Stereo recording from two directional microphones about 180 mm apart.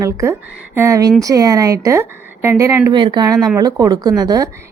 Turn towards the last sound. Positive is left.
turn(degrees=-20)  # may be behind; listen again after turning